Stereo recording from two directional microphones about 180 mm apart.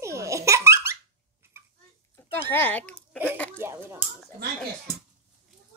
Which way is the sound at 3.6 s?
10° right (ahead or behind).